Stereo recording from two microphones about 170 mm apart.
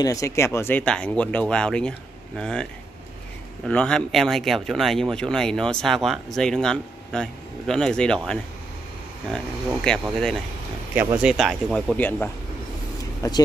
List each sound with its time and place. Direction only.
0.0 s speech: 20° left (ahead or behind); by 9.9 s 5° left (ahead or behind)
11.0 s speech: 10° right (ahead or behind)
11.3 s speech: centre (ahead or behind)
12.0 s speech: 10° left (ahead or behind)